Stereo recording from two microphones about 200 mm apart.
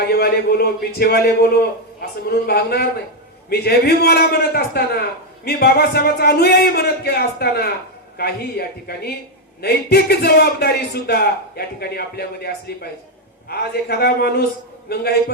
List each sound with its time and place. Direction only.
0.0 s a man's voice: 55° left (ahead or behind)